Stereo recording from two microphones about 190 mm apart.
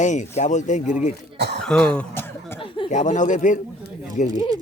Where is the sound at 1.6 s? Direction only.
5° left (ahead or behind).